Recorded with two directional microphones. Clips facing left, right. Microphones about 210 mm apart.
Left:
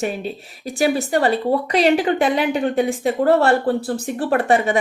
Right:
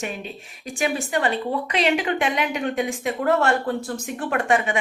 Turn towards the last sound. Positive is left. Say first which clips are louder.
# left 5 dB
turn(degrees=35)  # may be behind; listen again after turning